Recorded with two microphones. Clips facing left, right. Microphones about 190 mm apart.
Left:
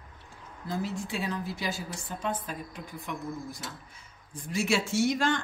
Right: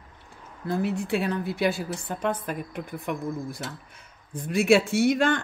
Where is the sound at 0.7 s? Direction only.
60° right (ahead or behind).